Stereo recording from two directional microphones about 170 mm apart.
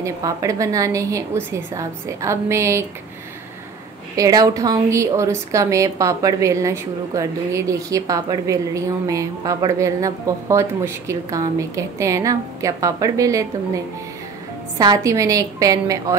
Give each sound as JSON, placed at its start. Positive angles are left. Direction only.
{"t": 0.0, "sound": "a woman's voice", "side_deg": -20}
{"t": 4.2, "sound": "a woman's voice", "side_deg": -20}
{"t": 14.8, "sound": "a woman's voice", "side_deg": -20}